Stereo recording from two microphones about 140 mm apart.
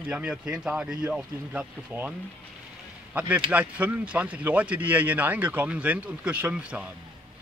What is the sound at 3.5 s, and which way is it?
Speech, 10° right (ahead or behind).